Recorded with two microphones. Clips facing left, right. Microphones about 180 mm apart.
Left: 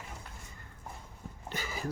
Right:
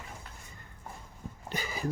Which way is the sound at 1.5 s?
15° right (ahead or behind).